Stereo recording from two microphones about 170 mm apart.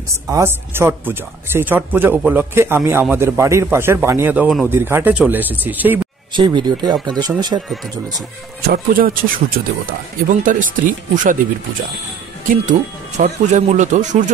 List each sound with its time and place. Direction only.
0.3 s a man's voice: 15° right (ahead or behind)
6.3 s speech: 25° right (ahead or behind)
8.6 s speech: 60° right (ahead or behind)
13.2 s speech: 45° right (ahead or behind)